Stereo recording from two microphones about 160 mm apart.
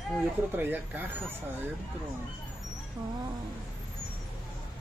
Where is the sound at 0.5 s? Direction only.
10° right (ahead or behind).